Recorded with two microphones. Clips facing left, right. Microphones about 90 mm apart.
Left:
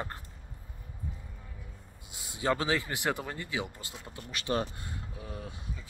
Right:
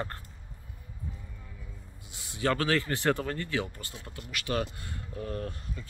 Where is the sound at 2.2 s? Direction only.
20° left (ahead or behind).